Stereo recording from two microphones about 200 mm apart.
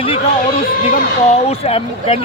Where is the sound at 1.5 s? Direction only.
30° left (ahead or behind).